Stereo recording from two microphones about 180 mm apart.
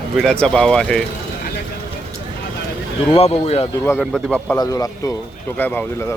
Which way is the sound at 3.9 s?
Centre (ahead or behind).